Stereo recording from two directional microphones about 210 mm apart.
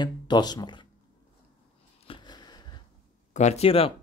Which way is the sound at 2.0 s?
20° left (ahead or behind).